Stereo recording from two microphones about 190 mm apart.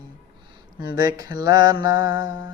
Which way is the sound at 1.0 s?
20° right (ahead or behind).